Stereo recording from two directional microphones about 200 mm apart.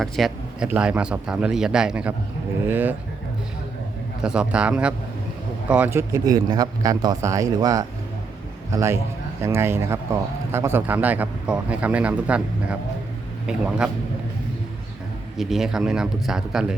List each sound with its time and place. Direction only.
0.0 s a man's voice: centre (ahead or behind)
4.2 s a man's voice: 5° right (ahead or behind)
15.4 s a man's voice: centre (ahead or behind)